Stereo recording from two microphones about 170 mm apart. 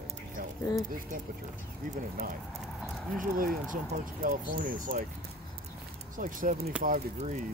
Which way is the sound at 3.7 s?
50° right (ahead or behind).